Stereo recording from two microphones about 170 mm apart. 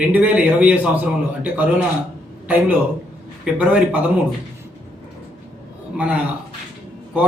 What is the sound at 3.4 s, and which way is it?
Speech, 5° right (ahead or behind).